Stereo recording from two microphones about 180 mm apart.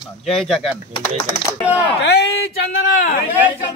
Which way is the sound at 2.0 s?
70° left (ahead or behind).